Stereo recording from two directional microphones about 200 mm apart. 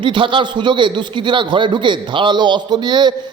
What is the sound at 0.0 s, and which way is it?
A man's voice, 25° right (ahead or behind).